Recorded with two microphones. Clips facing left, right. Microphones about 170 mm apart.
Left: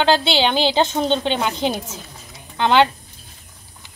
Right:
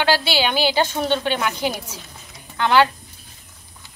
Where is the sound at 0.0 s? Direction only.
25° left (ahead or behind).